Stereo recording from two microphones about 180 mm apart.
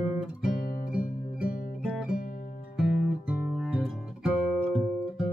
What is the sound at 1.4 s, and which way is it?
Music, 5° right (ahead or behind).